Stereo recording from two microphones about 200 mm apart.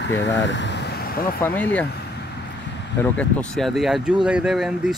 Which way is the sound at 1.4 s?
10° left (ahead or behind).